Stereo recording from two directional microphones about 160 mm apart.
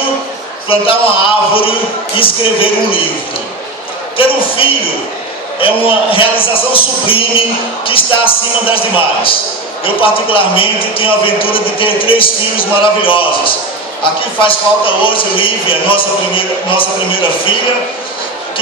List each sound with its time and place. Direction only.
0.7 s a man's voice: 35° left (ahead or behind)
4.2 s a man's voice: 35° left (ahead or behind)